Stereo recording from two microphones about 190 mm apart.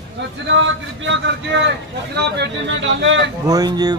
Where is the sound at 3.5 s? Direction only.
20° right (ahead or behind).